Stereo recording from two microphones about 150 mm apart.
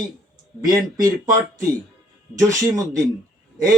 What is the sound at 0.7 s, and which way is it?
Speech, 25° right (ahead or behind).